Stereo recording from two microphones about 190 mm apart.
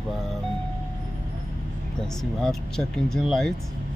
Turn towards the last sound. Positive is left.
turn(degrees=0)  # may be behind; listen again after turning